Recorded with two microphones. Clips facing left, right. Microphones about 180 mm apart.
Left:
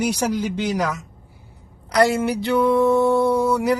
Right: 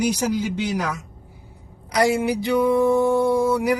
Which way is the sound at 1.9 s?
10° right (ahead or behind).